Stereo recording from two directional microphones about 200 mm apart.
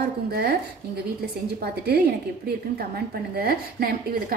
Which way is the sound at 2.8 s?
50° right (ahead or behind).